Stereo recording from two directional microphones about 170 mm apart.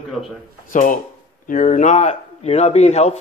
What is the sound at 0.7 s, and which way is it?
A man's voice, 50° left (ahead or behind).